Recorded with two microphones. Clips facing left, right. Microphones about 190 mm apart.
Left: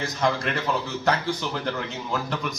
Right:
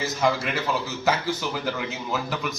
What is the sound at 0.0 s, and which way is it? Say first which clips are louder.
Speech: right 1 dB; 5° right (ahead or behind).